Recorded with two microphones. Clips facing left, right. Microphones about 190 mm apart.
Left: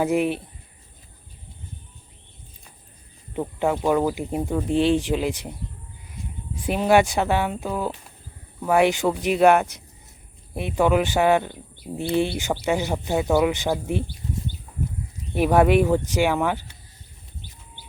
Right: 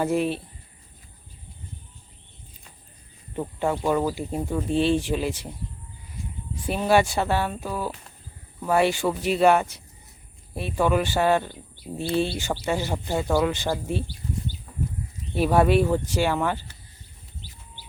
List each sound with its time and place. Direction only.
0.0 s speech: 15° left (ahead or behind)
3.3 s speech: 15° left (ahead or behind)
6.7 s speech: 15° left (ahead or behind)
15.4 s speech: 15° left (ahead or behind)
17.4 s bird: 50° left (ahead or behind)